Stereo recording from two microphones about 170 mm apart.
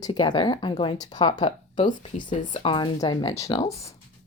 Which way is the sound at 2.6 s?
25° left (ahead or behind).